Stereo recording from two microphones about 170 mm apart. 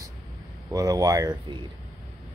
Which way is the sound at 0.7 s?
20° right (ahead or behind).